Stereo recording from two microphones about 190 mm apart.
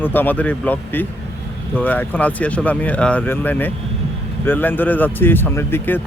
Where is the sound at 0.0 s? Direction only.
10° left (ahead or behind).